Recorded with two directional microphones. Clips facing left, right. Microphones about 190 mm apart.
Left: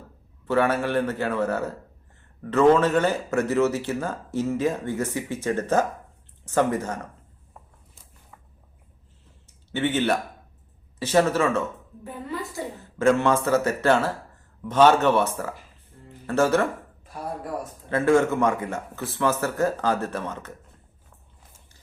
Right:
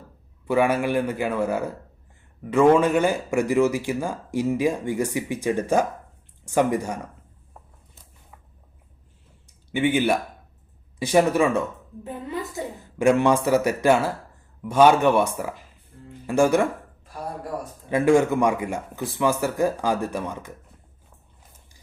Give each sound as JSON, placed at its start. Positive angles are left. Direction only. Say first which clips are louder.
{"t": 0.4, "sound": "speech", "louder": "right 1 dB", "side_deg": -10}
{"t": 7.6, "sound": "a sound", "louder": "right 1 dB", "side_deg": 0}
{"t": 9.5, "sound": "a woman's voice", "louder": "right 3 dB", "side_deg": -10}
{"t": 17.8, "sound": "speech", "louder": "right 2 dB", "side_deg": -15}